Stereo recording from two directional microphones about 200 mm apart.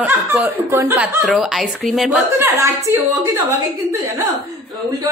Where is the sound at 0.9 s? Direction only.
Centre (ahead or behind).